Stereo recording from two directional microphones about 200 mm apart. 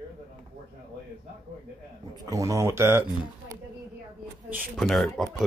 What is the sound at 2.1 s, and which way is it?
Speech, 15° right (ahead or behind).